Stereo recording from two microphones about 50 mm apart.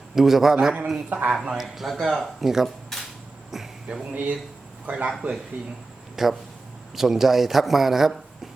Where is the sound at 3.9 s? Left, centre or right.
Right.